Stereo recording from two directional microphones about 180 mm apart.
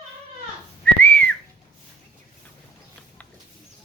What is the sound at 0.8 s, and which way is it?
Whistling, 10° left (ahead or behind).